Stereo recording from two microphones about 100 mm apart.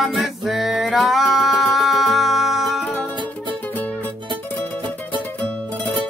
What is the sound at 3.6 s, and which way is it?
Music, 15° left (ahead or behind).